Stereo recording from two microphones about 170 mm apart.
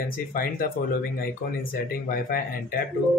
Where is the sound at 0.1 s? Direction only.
55° left (ahead or behind).